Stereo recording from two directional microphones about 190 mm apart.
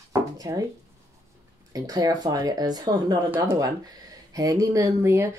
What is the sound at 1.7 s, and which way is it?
Speech, 20° right (ahead or behind).